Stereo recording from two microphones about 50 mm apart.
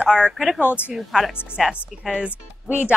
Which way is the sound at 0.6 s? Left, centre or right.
Left.